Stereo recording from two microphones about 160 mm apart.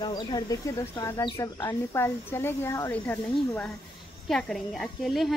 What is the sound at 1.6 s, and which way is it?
Speech, 15° left (ahead or behind).